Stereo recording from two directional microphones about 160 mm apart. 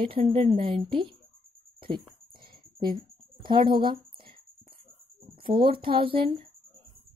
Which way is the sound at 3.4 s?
30° right (ahead or behind).